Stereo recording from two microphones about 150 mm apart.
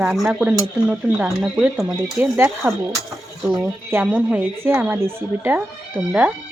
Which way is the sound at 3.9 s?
10° right (ahead or behind).